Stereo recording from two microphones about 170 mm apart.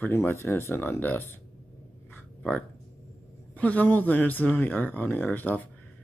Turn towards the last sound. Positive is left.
turn(degrees=10)  # may be behind; listen again after turning